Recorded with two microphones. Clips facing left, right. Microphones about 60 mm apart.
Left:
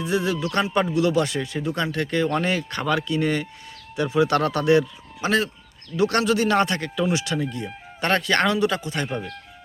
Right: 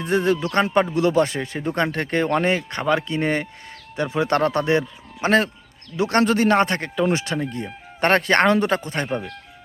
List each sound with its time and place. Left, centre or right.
0.0 s speech: right
0.4 s a man's voice: right
9.0 s speech: centre